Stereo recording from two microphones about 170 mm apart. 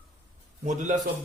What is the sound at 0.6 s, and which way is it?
Speech, 45° right (ahead or behind).